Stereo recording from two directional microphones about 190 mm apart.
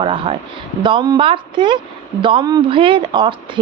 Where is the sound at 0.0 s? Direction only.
25° right (ahead or behind).